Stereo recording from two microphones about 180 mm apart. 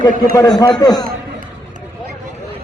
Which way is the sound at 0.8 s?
20° left (ahead or behind).